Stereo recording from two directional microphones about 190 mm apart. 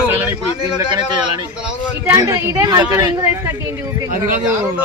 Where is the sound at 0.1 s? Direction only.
10° right (ahead or behind).